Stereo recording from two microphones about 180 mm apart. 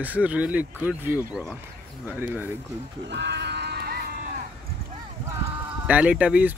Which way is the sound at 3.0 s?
75° right (ahead or behind).